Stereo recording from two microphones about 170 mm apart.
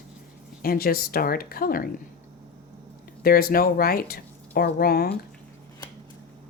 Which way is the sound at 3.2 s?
60° left (ahead or behind).